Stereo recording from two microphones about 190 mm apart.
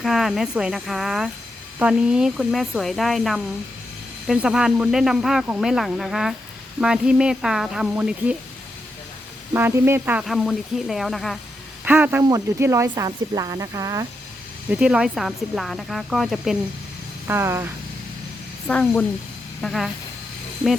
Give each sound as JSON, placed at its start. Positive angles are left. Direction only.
{"t": 0.0, "sound": "speech", "side_deg": 0}
{"t": 9.5, "sound": "speech", "side_deg": -10}
{"t": 11.9, "sound": "speech", "side_deg": -10}
{"t": 14.7, "sound": "speech", "side_deg": -5}
{"t": 17.2, "sound": "speech", "side_deg": -15}
{"t": 18.7, "sound": "a woman's voice", "side_deg": 5}